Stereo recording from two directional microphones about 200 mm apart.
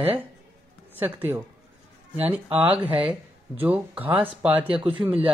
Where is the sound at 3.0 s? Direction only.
10° right (ahead or behind).